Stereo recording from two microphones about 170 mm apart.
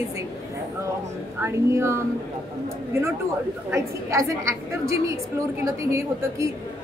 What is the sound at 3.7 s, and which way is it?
Speech, 15° right (ahead or behind).